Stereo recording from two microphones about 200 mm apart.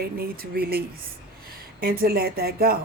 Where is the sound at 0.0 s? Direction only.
50° right (ahead or behind).